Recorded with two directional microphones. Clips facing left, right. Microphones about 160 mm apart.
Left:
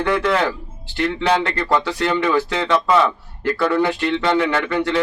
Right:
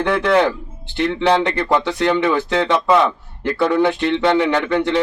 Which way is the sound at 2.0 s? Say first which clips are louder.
Right 2 dB; 15° right (ahead or behind).